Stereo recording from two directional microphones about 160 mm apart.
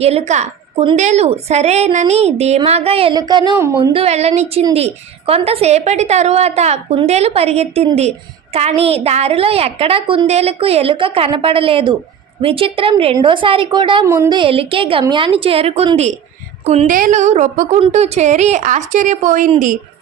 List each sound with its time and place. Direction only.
0.0 s a woman's voice: 40° right (ahead or behind)
3.2 s speech: 25° right (ahead or behind)
3.9 s a woman's voice: 40° right (ahead or behind)
14.1 s speech: 15° right (ahead or behind)
14.3 s a woman's voice: 35° right (ahead or behind); by 19.8 s 55° right (ahead or behind)